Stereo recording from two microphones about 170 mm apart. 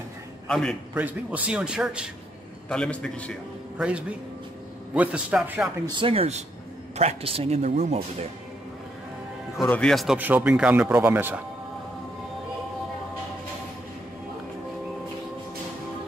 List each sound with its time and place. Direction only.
0.5 s a man's voice: 5° left (ahead or behind)
0.9 s a man's voice: 10° right (ahead or behind)
2.7 s a man's voice: 5° left (ahead or behind)
3.7 s speech: 5° right (ahead or behind)
5.9 s speech: 30° right (ahead or behind)
9.6 s a man's voice: 10° left (ahead or behind)
10.1 s speech: 10° right (ahead or behind)